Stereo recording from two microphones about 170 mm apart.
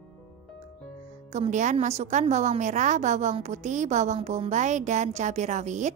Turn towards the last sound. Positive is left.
turn(degrees=-45)  # may be behind; listen again after turning